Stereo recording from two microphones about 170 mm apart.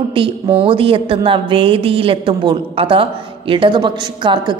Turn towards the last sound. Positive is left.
turn(degrees=-25)  # may be behind; listen again after turning